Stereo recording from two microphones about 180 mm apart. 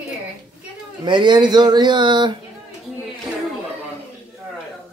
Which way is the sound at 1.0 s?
25° right (ahead or behind).